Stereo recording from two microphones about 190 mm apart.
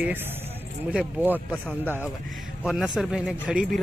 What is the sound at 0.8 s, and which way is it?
Speech, 10° right (ahead or behind).